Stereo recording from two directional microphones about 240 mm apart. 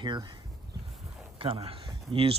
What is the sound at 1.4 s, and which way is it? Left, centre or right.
Speech, right.